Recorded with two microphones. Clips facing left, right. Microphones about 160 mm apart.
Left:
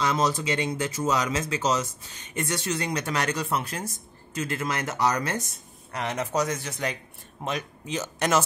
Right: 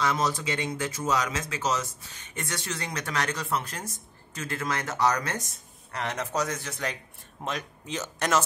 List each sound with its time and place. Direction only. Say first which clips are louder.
0.0 s speech: left 2 dB; 20° left (ahead or behind)